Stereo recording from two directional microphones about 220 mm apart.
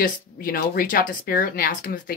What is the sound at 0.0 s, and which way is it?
Speech, 40° left (ahead or behind).